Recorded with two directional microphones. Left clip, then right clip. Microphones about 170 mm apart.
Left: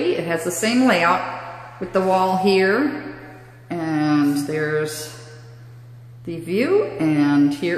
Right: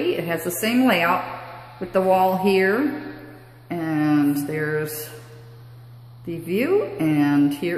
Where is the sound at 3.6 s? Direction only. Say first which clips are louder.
Left 1 dB; centre (ahead or behind).